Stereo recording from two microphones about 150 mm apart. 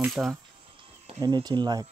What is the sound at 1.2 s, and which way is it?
Speech, 30° right (ahead or behind).